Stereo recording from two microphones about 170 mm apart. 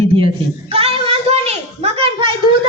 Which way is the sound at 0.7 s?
35° right (ahead or behind).